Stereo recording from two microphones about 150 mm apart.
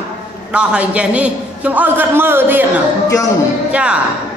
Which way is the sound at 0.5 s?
10° right (ahead or behind).